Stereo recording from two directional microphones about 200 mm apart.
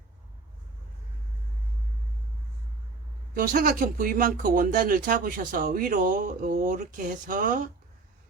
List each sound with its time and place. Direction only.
3.3 s speech: 45° right (ahead or behind)